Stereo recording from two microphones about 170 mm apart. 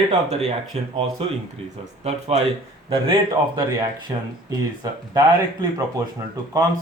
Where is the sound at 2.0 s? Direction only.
40° right (ahead or behind).